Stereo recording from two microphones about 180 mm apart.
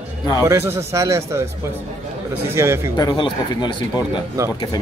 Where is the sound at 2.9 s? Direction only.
25° left (ahead or behind).